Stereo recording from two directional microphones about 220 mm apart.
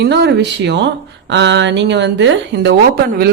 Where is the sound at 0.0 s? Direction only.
50° right (ahead or behind).